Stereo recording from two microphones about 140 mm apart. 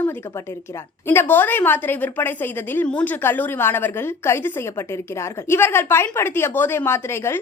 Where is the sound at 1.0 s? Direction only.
15° left (ahead or behind).